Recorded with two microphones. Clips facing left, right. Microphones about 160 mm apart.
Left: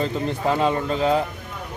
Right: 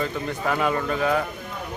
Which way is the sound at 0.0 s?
30° left (ahead or behind).